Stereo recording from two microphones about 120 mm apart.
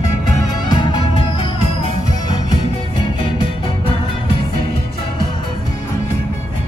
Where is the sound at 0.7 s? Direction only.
40° left (ahead or behind).